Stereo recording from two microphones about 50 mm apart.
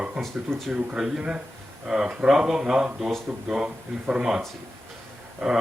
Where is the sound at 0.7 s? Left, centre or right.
Centre.